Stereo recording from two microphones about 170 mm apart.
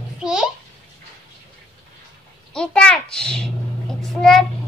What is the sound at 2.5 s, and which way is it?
A child's voice, 5° left (ahead or behind).